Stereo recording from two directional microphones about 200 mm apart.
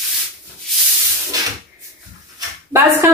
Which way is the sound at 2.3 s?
10° right (ahead or behind).